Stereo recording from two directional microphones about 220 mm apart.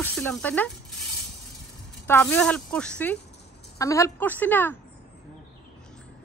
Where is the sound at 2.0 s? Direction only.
10° left (ahead or behind).